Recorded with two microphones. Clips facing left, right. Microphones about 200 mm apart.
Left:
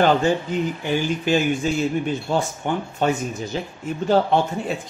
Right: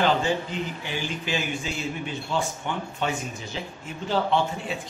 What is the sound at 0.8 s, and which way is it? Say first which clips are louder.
Speech: left 9 dB; 50° left (ahead or behind).